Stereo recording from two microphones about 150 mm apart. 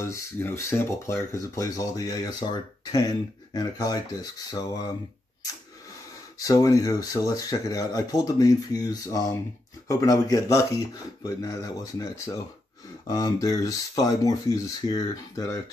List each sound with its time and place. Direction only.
0.0 s speech: 15° left (ahead or behind)
6.4 s speech: 25° left (ahead or behind)